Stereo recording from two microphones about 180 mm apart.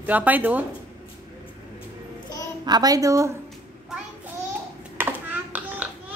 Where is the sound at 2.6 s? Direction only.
20° right (ahead or behind).